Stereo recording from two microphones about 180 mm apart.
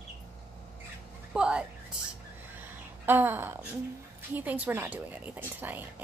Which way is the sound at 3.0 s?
10° right (ahead or behind).